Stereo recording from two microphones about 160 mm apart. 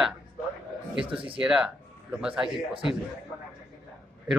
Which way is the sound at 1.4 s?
5° right (ahead or behind).